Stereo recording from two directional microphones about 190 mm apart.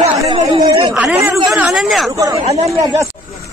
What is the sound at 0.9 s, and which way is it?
Speech, 5° right (ahead or behind).